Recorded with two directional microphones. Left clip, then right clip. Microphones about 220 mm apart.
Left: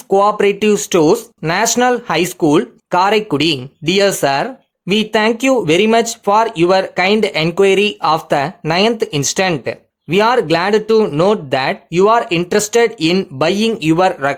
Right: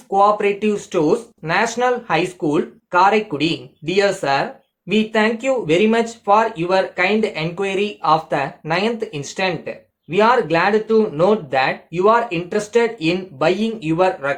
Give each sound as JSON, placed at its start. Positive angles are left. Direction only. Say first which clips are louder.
{"t": 0.1, "sound": "speech", "louder": "left 3 dB", "side_deg": 50}